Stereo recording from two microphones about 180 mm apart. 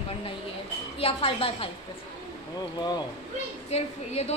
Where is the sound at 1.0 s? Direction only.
30° left (ahead or behind).